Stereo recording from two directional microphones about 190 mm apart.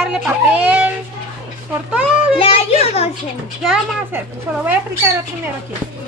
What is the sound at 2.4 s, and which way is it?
Speech, 30° left (ahead or behind).